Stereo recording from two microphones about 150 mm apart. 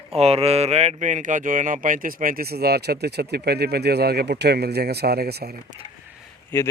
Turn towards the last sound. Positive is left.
turn(degrees=15)  # may be behind; listen again after turning